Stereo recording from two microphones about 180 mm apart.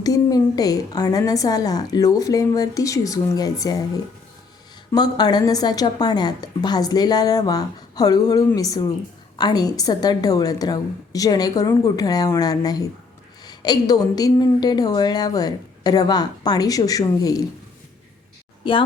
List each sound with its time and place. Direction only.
0.0 s a woman's voice: 20° left (ahead or behind)